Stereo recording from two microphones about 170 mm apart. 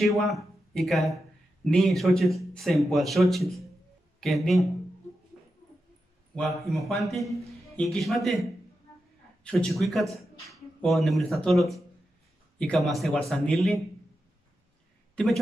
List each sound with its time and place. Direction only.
0.0 s a man's voice: centre (ahead or behind)
6.3 s a man's voice: centre (ahead or behind)